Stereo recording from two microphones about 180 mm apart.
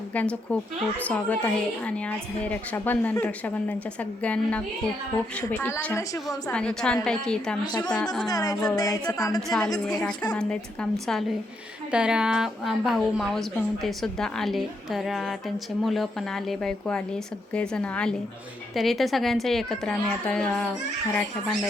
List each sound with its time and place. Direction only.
0.1 s a woman's voice: 5° left (ahead or behind)
7.6 s speech: 20° left (ahead or behind)
7.9 s a woman's voice: 5° left (ahead or behind)
8.3 s speech: 20° left (ahead or behind)
9.5 s a woman's voice: 5° left (ahead or behind)